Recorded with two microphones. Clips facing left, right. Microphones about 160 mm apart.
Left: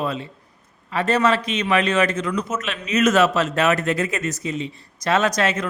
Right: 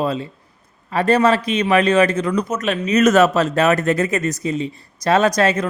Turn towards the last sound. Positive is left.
turn(degrees=-35)  # may be behind; listen again after turning